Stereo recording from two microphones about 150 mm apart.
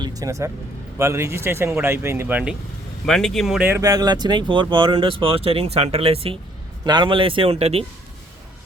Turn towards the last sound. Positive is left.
turn(degrees=-40)  # may be behind; listen again after turning